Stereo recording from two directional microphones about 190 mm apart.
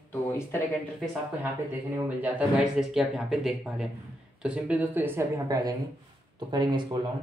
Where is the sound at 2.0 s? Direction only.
5° right (ahead or behind); by 7.0 s 20° right (ahead or behind).